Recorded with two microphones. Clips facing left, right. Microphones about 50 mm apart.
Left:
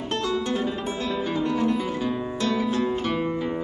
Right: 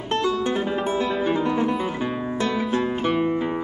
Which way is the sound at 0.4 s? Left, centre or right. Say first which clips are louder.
Right 3 dB; right.